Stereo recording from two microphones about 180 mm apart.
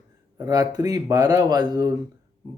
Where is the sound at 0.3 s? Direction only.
20° right (ahead or behind).